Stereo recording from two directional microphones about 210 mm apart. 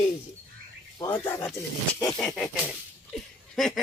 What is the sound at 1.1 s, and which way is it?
A woman's voice, 10° left (ahead or behind).